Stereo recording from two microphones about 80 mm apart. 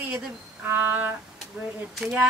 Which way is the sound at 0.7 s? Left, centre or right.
Right.